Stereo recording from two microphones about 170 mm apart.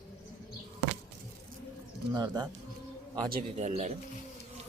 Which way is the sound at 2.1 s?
25° right (ahead or behind).